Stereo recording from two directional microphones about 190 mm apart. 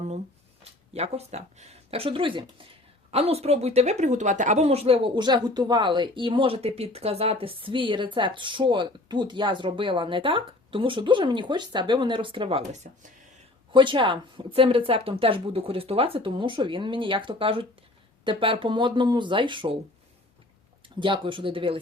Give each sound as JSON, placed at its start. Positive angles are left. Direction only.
{"t": 0.6, "sound": "a woman's voice", "side_deg": -35}
{"t": 13.7, "sound": "a woman's voice", "side_deg": -25}
{"t": 21.0, "sound": "a woman's voice", "side_deg": -25}